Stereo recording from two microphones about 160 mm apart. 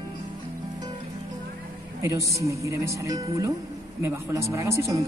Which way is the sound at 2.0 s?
20° right (ahead or behind).